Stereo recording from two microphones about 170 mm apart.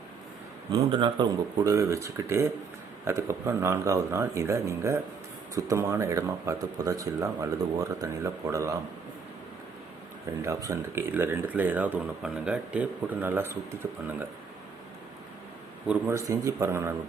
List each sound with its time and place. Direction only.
0.7 s speech: 30° right (ahead or behind)
10.4 s speech: 20° right (ahead or behind)
15.9 s speech: 15° right (ahead or behind)